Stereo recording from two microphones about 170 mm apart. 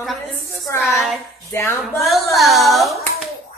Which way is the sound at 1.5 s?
15° left (ahead or behind).